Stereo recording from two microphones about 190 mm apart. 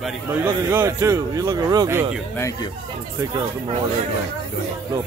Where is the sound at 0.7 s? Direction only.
15° right (ahead or behind).